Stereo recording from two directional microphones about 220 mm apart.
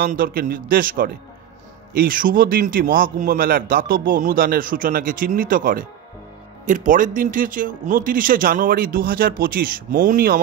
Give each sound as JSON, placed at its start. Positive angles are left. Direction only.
{"t": 0.0, "sound": "a man's voice", "side_deg": -40}